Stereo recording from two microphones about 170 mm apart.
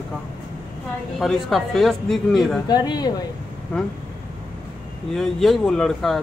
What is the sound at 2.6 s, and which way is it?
Speech, 25° left (ahead or behind).